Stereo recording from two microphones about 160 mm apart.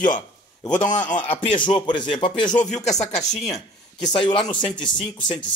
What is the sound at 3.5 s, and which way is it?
A man's voice, 25° left (ahead or behind).